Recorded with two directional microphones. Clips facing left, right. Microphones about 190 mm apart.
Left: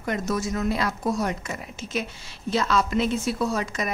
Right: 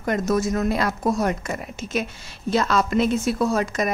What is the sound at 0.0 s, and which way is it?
A woman's voice, 45° right (ahead or behind).